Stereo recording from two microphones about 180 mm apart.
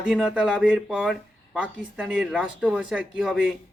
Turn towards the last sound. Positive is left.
turn(degrees=-5)  # may be behind; listen again after turning